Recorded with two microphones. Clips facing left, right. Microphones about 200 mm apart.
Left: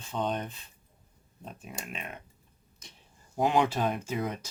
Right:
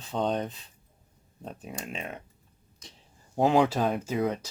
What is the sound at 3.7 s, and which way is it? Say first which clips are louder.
Speech: right 3 dB; 40° right (ahead or behind).